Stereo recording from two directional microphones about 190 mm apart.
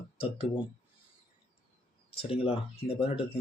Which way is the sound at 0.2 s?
30° left (ahead or behind).